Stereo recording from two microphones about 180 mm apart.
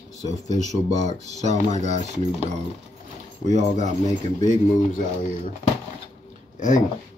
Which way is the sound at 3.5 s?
40° right (ahead or behind).